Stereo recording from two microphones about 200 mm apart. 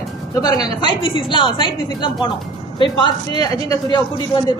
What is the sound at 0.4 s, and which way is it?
A woman's voice, 20° left (ahead or behind).